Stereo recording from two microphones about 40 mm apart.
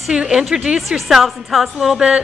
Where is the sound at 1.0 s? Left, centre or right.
Centre.